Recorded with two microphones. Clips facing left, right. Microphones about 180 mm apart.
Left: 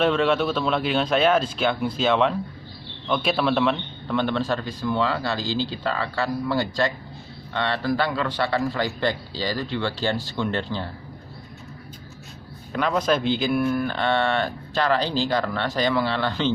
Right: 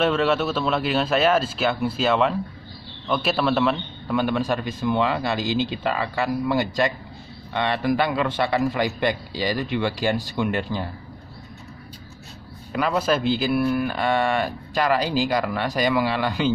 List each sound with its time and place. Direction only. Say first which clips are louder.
0.0 s a man's voice: even; 5° right (ahead or behind)
12.7 s speech: even; 5° right (ahead or behind)